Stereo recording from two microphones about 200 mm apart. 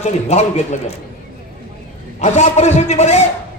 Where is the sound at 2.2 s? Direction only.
35° left (ahead or behind).